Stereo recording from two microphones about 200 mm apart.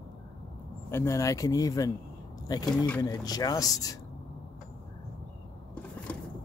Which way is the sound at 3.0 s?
20° left (ahead or behind).